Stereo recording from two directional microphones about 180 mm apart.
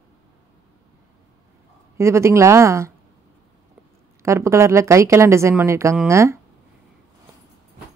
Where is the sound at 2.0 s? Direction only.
15° right (ahead or behind).